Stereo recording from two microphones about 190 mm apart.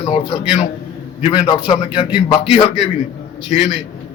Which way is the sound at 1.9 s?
25° left (ahead or behind).